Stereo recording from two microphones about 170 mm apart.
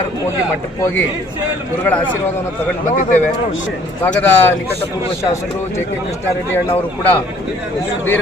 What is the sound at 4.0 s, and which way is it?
Speech, 10° left (ahead or behind).